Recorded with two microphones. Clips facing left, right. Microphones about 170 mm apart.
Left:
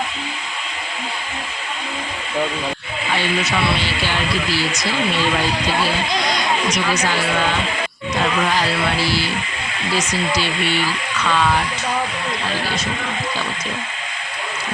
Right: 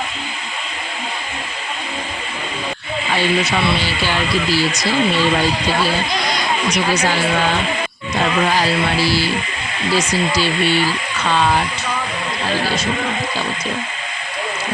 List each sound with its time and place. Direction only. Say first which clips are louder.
6.7 s speech: right 2 dB; 30° right (ahead or behind)
8.4 s speech: right 2 dB; 35° right (ahead or behind)